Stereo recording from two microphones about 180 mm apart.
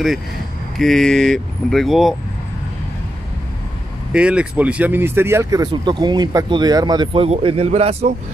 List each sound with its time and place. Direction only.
0.7 s speech: centre (ahead or behind)
4.1 s speech: 5° right (ahead or behind); by 8.1 s 35° right (ahead or behind)